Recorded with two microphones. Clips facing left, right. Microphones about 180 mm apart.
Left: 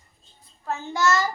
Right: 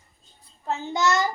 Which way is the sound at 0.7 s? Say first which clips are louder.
Even; 20° right (ahead or behind).